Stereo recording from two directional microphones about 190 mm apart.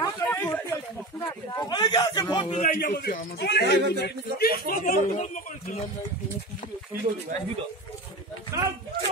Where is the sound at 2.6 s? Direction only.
45° left (ahead or behind).